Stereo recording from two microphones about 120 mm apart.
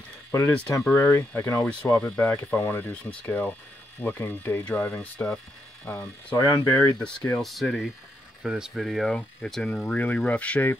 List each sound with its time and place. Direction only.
0.3 s speech: 20° left (ahead or behind)
1.6 s speech: 10° left (ahead or behind)
7.4 s speech: centre (ahead or behind)